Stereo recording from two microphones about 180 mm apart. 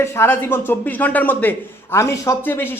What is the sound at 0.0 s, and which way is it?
Speech, 10° left (ahead or behind).